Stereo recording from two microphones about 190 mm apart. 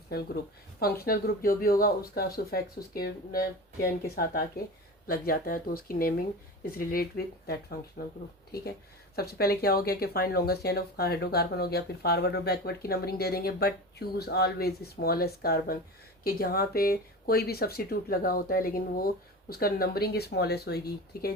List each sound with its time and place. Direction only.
0.1 s speech: 55° left (ahead or behind)
9.1 s speech: 55° left (ahead or behind)